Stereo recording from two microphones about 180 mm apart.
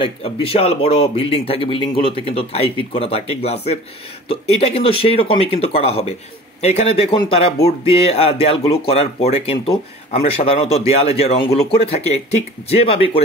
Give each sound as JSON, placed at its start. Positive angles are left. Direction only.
{"t": 0.0, "sound": "speech", "side_deg": 30}